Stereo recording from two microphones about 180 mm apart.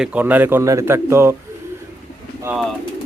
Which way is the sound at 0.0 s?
10° right (ahead or behind).